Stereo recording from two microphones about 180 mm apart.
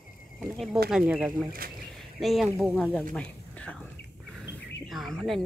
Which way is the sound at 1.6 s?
55° right (ahead or behind).